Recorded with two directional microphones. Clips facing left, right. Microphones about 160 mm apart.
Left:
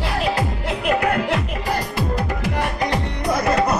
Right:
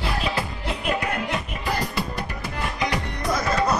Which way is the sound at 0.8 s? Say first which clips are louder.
Left 7 dB; 60° left (ahead or behind).